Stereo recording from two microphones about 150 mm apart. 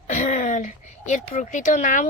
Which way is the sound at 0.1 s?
55° left (ahead or behind).